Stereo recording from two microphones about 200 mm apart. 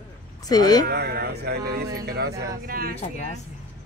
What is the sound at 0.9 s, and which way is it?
Speech, 50° right (ahead or behind).